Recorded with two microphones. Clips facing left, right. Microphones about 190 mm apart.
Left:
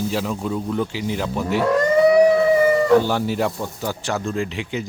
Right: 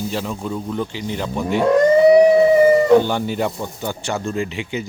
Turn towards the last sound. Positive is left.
turn(degrees=0)  # may be behind; listen again after turning